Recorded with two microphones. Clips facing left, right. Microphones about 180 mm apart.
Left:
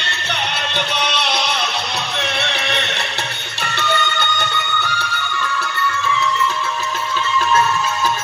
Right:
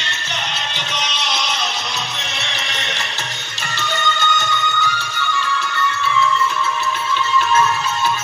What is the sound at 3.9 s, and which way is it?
Music, 60° left (ahead or behind).